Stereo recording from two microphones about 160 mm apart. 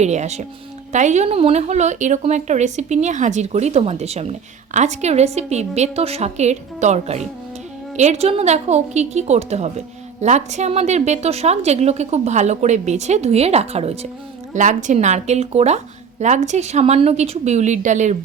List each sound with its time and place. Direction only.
0.0 s a woman's voice: 45° right (ahead or behind)